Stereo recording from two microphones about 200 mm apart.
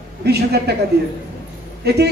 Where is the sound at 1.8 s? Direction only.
55° right (ahead or behind).